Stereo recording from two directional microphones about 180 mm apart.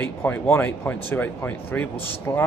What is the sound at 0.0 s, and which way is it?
Speech, 10° left (ahead or behind).